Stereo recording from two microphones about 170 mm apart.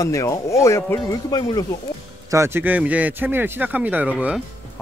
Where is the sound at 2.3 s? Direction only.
15° right (ahead or behind).